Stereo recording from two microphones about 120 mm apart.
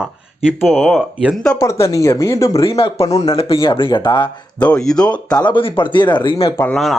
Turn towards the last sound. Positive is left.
turn(degrees=0)  # may be behind; listen again after turning